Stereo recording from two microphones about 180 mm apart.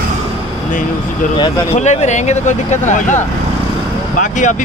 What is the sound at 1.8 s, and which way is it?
Speech, 40° left (ahead or behind).